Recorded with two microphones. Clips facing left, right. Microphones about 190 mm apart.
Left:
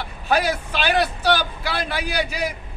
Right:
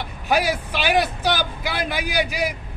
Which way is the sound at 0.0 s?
15° right (ahead or behind).